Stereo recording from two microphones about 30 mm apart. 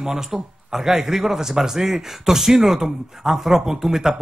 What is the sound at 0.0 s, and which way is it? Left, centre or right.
Speech, centre.